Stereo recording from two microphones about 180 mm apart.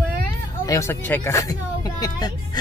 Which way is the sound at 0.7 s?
15° left (ahead or behind).